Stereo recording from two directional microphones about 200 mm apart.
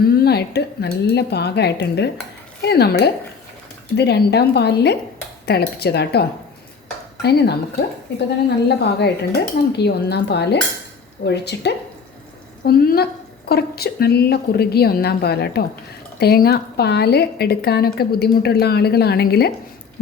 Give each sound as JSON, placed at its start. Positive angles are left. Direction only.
{"t": 0.2, "sound": "a woman's voice", "side_deg": 55}
{"t": 8.8, "sound": "a woman's voice", "side_deg": 55}